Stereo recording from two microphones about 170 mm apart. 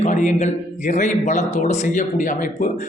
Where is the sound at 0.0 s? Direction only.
45° left (ahead or behind).